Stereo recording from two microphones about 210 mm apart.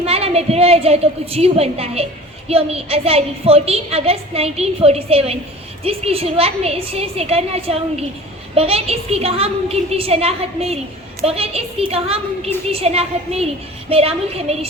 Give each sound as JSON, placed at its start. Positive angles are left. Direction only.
{"t": 0.0, "sound": "a woman's voice", "side_deg": -30}